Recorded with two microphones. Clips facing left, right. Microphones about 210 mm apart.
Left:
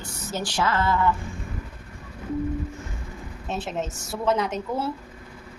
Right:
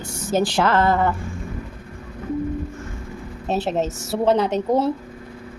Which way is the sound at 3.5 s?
35° right (ahead or behind).